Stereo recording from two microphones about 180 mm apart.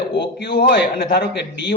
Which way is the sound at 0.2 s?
70° left (ahead or behind).